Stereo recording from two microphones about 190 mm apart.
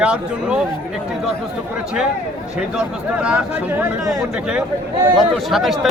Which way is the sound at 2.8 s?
5° right (ahead or behind).